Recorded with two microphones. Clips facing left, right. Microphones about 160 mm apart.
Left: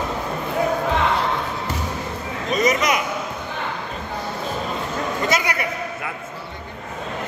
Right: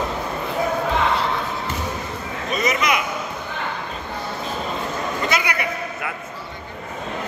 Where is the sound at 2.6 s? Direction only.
40° left (ahead or behind).